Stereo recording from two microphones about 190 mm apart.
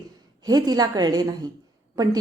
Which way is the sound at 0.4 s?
20° right (ahead or behind).